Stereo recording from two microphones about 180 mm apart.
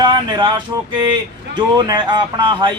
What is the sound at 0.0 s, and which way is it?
Speech, 25° right (ahead or behind).